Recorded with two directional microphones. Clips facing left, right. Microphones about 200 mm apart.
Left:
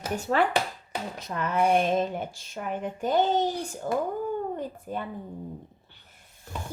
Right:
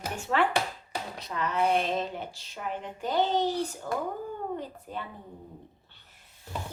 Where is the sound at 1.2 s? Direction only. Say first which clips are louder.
Left 3 dB; 50° left (ahead or behind).